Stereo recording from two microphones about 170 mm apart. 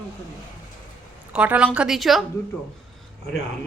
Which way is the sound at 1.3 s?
10° right (ahead or behind).